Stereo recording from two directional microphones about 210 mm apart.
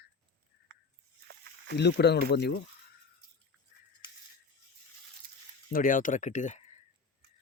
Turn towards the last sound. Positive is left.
turn(degrees=35)  # may be behind; listen again after turning